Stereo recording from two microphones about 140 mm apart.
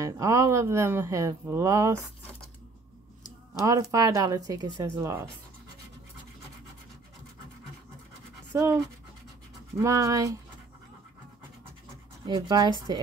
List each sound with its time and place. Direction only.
0.0 s speech: 20° right (ahead or behind)
3.6 s speech: 25° right (ahead or behind)
8.5 s speech: 20° right (ahead or behind)
12.4 s speech: 30° right (ahead or behind)